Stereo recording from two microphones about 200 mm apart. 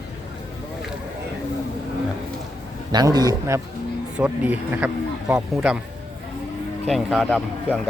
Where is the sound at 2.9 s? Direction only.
20° right (ahead or behind); by 5.8 s 5° right (ahead or behind).